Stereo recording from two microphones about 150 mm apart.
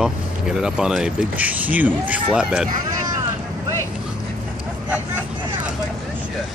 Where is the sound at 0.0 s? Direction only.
5° right (ahead or behind).